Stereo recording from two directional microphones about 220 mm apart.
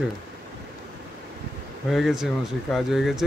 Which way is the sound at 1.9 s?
Centre (ahead or behind).